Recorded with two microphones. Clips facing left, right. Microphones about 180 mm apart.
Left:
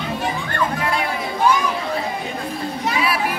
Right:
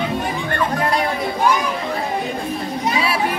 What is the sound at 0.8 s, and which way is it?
Chatter, 40° right (ahead or behind).